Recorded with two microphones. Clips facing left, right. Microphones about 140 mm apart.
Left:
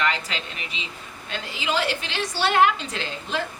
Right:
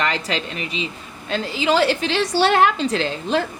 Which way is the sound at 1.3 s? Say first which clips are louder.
Right 8 dB; 35° right (ahead or behind).